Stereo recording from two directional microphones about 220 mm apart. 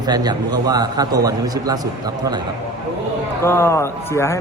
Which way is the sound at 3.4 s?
10° left (ahead or behind).